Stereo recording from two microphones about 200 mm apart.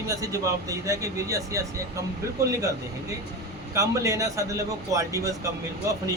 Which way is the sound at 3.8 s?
15° right (ahead or behind).